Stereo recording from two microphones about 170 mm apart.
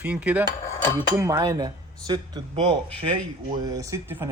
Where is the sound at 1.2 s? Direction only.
20° right (ahead or behind).